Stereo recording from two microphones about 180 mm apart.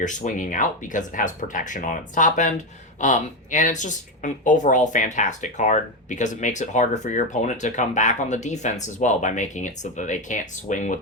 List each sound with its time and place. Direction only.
0.3 s speech: 45° left (ahead or behind)